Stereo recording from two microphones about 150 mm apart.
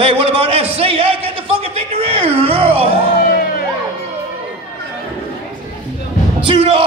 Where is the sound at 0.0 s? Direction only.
40° right (ahead or behind).